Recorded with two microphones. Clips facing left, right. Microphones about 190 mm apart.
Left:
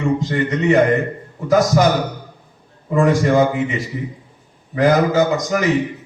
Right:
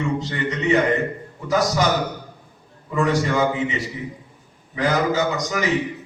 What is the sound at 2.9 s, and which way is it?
A man's voice, 50° left (ahead or behind).